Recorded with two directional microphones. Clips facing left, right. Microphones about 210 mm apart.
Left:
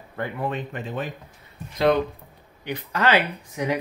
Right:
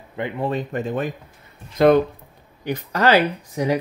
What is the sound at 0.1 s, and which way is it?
Speech, 20° right (ahead or behind).